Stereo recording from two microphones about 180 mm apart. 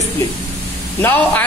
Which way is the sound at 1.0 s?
10° left (ahead or behind).